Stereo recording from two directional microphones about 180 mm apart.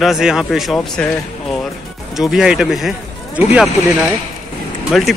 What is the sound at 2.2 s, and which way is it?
Speech, centre (ahead or behind).